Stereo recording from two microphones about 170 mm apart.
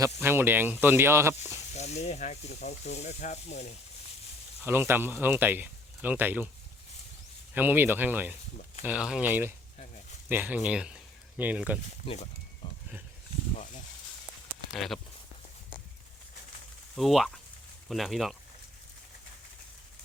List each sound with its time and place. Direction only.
0.0 s speech: 15° right (ahead or behind)
1.7 s speech: 40° left (ahead or behind)
4.6 s speech: 15° right (ahead or behind)
7.5 s speech: 10° right (ahead or behind)
12.0 s speech: 40° left (ahead or behind)
12.6 s a sound: 30° left (ahead or behind)
14.7 s speech: centre (ahead or behind)
16.9 s speech: centre (ahead or behind)